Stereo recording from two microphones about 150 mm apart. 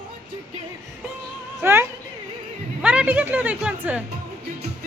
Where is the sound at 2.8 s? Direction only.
10° right (ahead or behind).